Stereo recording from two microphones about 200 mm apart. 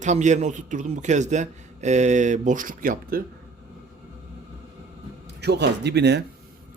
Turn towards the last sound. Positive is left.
turn(degrees=-55)  # may be behind; listen again after turning